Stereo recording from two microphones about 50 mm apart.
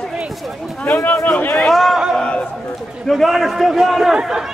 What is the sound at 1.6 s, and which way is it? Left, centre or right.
Speech, centre.